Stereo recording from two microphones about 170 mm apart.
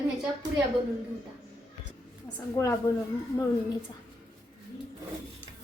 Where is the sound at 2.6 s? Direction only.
15° left (ahead or behind).